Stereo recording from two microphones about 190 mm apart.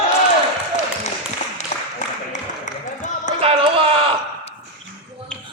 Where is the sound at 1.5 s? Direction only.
40° left (ahead or behind).